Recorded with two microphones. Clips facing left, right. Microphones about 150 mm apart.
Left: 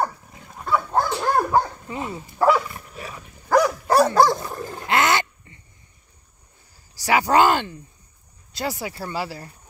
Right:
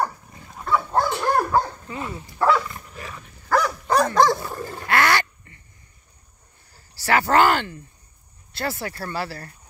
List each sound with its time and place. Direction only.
0.0 s dog: 5° left (ahead or behind)
1.1 s dog: 20° left (ahead or behind)
2.7 s dog: 5° left (ahead or behind)
3.4 s dog: 15° left (ahead or behind)
4.8 s pig: 20° left (ahead or behind)
7.0 s speech: 15° left (ahead or behind)